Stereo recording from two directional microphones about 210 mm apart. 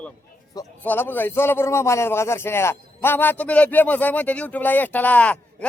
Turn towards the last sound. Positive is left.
turn(degrees=5)  # may be behind; listen again after turning